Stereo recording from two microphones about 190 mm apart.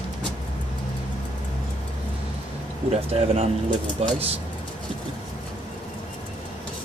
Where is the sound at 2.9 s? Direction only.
30° right (ahead or behind).